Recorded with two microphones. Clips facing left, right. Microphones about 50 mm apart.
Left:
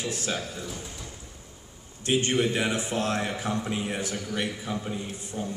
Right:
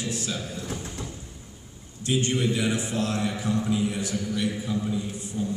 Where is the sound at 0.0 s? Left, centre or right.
Left.